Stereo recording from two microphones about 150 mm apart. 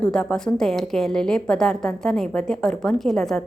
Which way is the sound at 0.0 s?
5° left (ahead or behind).